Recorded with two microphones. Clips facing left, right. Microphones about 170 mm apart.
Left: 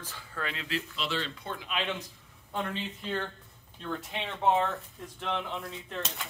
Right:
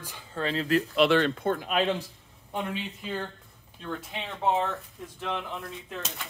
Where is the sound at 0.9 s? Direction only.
60° right (ahead or behind); by 2.0 s 40° right (ahead or behind).